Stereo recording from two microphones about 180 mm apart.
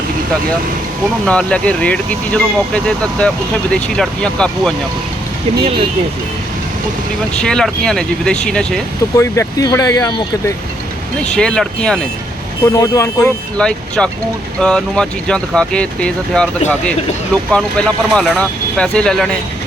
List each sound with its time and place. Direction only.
1.2 s speech: 5° left (ahead or behind)
7.3 s speech: 5° left (ahead or behind)
9.1 s speech: 15° left (ahead or behind)
11.3 s speech: 5° left (ahead or behind)
12.7 s speech: 20° left (ahead or behind)
13.6 s speech: 5° left (ahead or behind)